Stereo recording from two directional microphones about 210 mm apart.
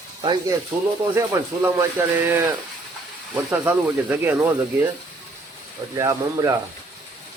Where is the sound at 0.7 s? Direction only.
5° right (ahead or behind).